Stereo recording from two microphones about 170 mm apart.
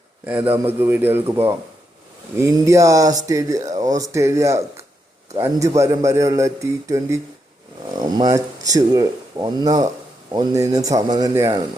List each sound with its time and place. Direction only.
0.3 s a man's voice: 10° right (ahead or behind)